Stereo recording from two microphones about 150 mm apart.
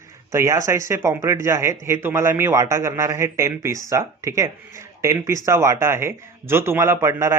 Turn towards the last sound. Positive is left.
turn(degrees=-15)  # may be behind; listen again after turning